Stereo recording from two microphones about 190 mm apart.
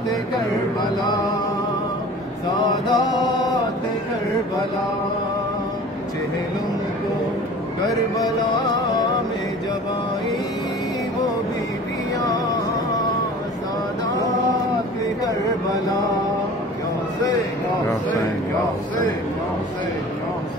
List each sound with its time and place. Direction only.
2.9 s music: 20° left (ahead or behind)